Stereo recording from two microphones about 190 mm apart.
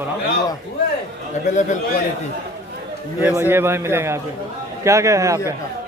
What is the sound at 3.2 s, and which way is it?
Speech, 10° right (ahead or behind).